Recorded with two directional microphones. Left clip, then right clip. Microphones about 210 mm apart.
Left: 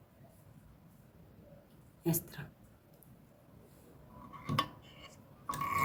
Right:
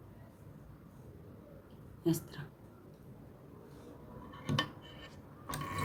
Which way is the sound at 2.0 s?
55° left (ahead or behind).